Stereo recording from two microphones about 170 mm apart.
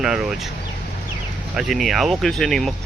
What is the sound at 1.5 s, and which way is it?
Speech, centre (ahead or behind).